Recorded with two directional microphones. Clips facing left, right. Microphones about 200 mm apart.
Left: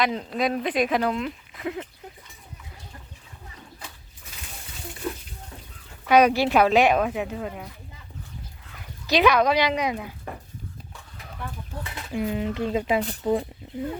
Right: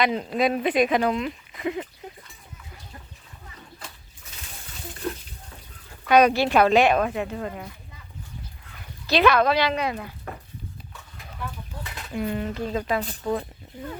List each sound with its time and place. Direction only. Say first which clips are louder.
0.0 s speech: right 2 dB; 5° right (ahead or behind)
5.0 s bathtub: right 1 dB; 5° left (ahead or behind)
6.1 s speech: even; 10° left (ahead or behind)
9.0 s speech: even; 15° left (ahead or behind)
12.1 s speech: left 1 dB; 10° left (ahead or behind)